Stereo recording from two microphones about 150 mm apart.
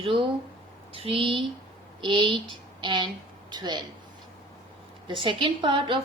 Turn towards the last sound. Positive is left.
turn(degrees=-35)  # may be behind; listen again after turning